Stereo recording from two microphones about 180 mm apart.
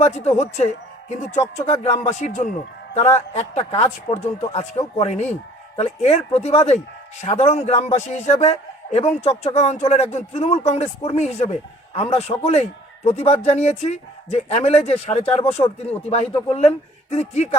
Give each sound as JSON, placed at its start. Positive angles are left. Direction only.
{"t": 0.0, "sound": "speech", "side_deg": 35}